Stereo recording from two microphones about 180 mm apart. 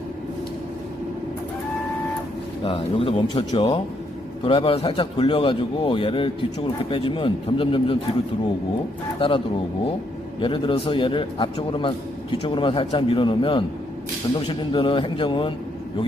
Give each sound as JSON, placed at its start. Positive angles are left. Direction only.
{"t": 2.6, "sound": "a man's voice", "side_deg": 30}
{"t": 9.1, "sound": "a man's voice", "side_deg": 30}
{"t": 10.4, "sound": "a man's voice", "side_deg": 25}